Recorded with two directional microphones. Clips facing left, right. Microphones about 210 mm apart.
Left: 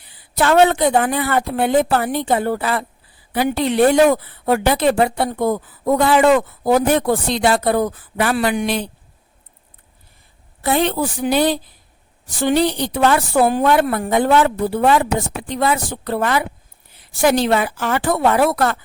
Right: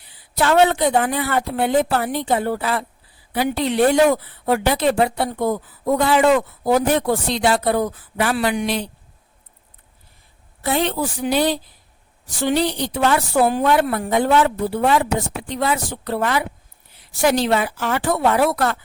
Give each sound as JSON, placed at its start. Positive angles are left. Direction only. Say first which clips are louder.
{"t": 0.3, "sound": "speech", "louder": "left 2 dB", "side_deg": 50}
{"t": 10.6, "sound": "speech", "louder": "left 3 dB", "side_deg": 50}